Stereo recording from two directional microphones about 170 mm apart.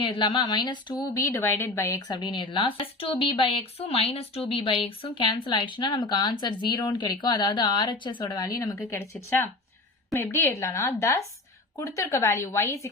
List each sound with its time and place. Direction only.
0.0 s a woman's voice: 30° left (ahead or behind)